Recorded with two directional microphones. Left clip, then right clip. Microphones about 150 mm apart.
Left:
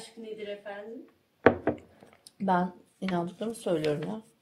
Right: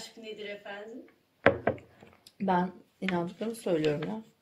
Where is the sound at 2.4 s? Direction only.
30° left (ahead or behind).